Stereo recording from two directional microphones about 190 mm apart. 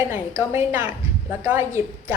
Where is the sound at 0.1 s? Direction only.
10° right (ahead or behind).